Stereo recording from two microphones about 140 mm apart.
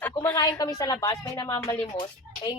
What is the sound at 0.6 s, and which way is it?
A woman's voice, 25° left (ahead or behind).